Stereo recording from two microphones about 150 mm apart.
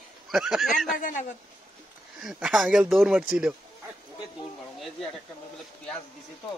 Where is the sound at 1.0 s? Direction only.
60° left (ahead or behind).